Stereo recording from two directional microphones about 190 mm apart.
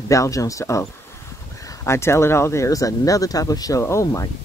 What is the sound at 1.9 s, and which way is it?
Speech, 15° left (ahead or behind).